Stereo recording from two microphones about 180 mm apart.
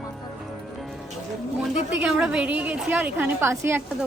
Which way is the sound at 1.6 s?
5° right (ahead or behind).